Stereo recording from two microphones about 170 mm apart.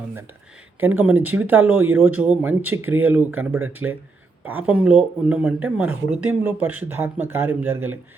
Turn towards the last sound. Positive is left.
turn(degrees=-10)  # may be behind; listen again after turning